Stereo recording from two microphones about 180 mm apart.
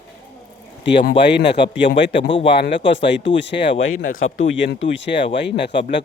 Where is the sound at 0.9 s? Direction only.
75° left (ahead or behind).